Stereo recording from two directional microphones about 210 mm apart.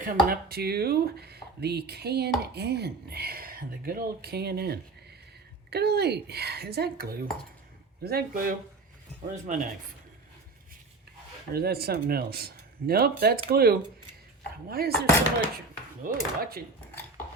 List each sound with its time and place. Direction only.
0.0 s speech: 45° right (ahead or behind)
11.5 s speech: 45° right (ahead or behind)
16.0 s speech: 45° right (ahead or behind)